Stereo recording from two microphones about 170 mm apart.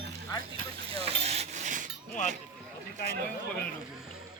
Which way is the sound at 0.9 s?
35° right (ahead or behind).